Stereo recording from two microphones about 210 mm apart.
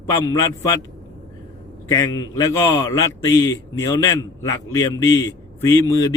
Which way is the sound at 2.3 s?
15° left (ahead or behind).